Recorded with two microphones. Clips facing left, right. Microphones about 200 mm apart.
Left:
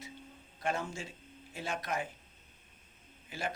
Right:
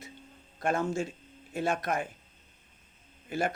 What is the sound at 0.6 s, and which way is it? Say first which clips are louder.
Speech: right 7 dB; 50° right (ahead or behind).